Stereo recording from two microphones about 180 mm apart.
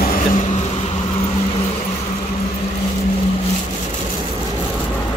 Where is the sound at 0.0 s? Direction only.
50° left (ahead or behind).